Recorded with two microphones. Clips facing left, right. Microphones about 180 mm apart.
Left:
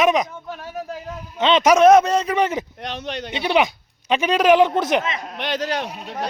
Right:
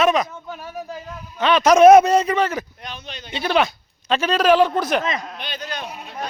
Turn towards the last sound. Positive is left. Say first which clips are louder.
# left 5 dB
turn(degrees=75)  # may be behind; listen again after turning